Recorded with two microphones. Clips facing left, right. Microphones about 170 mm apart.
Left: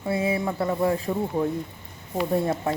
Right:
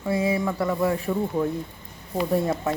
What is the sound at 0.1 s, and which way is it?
Speech, 25° left (ahead or behind).